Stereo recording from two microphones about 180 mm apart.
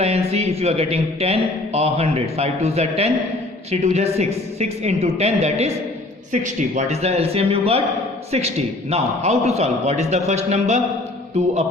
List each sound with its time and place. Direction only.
0.0 s a man's voice: 35° right (ahead or behind)